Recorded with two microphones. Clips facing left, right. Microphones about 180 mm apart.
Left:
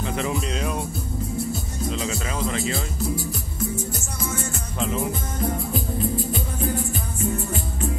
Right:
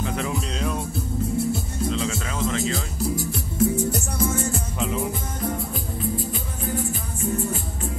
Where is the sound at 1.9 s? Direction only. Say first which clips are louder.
Even; 5° left (ahead or behind).